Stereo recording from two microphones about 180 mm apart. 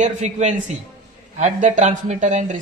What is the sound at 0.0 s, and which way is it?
A man's voice, 40° right (ahead or behind).